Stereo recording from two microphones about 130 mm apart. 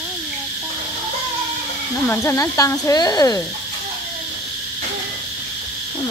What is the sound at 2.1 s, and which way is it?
Speech, 15° left (ahead or behind).